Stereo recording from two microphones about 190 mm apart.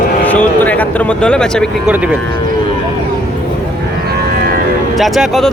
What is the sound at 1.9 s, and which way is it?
Speech, 5° right (ahead or behind).